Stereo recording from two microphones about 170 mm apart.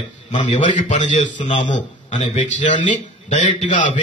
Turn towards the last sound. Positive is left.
turn(degrees=45)  # may be behind; listen again after turning